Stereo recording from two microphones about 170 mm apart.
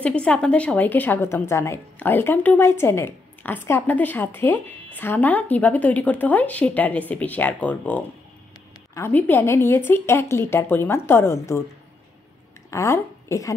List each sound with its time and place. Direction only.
0.0 s a woman's voice: 5° left (ahead or behind)
12.7 s speech: 15° left (ahead or behind)